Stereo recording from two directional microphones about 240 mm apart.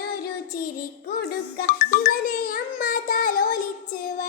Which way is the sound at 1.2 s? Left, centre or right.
Left.